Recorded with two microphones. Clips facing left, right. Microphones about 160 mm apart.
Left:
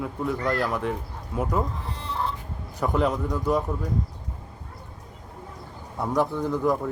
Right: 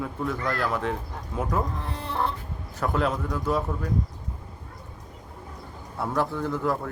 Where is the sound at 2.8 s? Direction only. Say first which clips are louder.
Left 2 dB; 15° left (ahead or behind).